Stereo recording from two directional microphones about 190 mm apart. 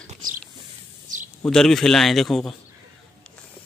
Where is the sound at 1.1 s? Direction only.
45° right (ahead or behind).